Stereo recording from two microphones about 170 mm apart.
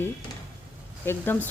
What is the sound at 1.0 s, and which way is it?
Speech, 10° left (ahead or behind).